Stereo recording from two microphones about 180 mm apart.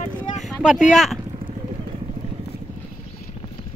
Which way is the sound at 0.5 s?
Centre (ahead or behind).